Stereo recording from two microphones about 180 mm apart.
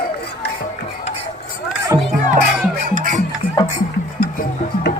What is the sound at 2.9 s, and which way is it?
Music, 45° right (ahead or behind).